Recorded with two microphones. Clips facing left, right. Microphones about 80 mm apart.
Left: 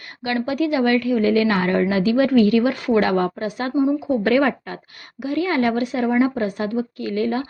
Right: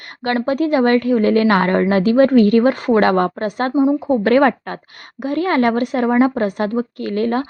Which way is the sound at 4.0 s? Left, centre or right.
Right.